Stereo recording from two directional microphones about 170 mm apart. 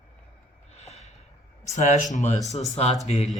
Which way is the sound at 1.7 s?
45° left (ahead or behind).